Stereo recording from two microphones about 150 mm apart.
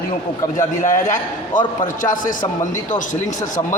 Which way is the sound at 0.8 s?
60° left (ahead or behind).